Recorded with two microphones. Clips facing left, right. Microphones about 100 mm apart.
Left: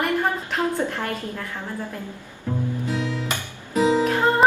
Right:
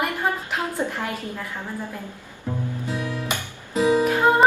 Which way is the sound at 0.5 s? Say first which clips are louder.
Left 2 dB; 10° right (ahead or behind).